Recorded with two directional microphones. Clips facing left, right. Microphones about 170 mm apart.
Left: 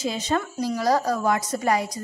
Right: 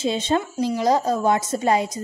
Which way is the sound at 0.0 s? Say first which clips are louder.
Right 3 dB; 25° right (ahead or behind).